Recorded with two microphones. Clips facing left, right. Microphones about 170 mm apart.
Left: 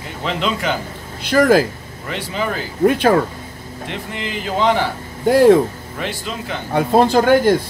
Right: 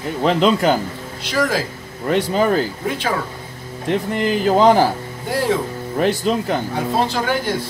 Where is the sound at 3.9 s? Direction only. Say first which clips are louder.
Right 9 dB; 45° right (ahead or behind).